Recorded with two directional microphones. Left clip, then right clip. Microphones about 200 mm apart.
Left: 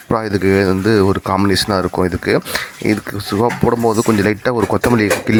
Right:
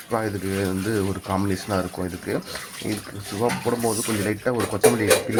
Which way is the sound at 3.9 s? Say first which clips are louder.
Left 10 dB; 30° left (ahead or behind).